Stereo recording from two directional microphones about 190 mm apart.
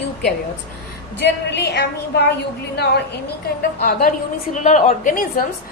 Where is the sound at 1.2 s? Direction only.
60° left (ahead or behind).